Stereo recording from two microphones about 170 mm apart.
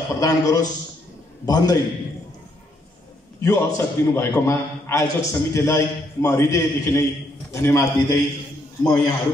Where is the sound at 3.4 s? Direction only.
15° left (ahead or behind).